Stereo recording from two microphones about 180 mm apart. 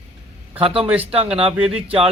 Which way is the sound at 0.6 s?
30° right (ahead or behind).